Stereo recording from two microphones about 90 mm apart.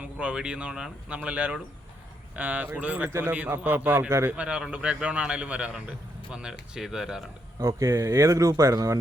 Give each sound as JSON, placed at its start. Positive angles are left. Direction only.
{"t": 0.0, "sound": "a man's voice", "side_deg": -15}
{"t": 7.8, "sound": "speech", "side_deg": -35}